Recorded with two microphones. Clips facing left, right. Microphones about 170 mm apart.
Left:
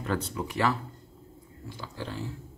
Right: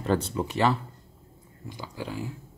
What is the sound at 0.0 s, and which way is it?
Speech, 30° right (ahead or behind).